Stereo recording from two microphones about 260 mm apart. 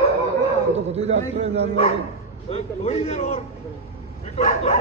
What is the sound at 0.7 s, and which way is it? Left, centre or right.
Speech, right.